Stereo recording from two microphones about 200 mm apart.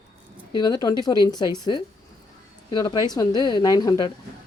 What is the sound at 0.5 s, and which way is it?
Speech, 20° left (ahead or behind).